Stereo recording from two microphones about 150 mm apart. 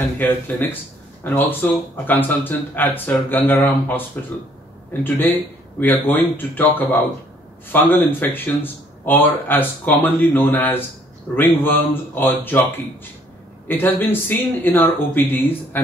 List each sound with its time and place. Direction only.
0.2 s speech: 10° left (ahead or behind)
5.0 s speech: 15° left (ahead or behind)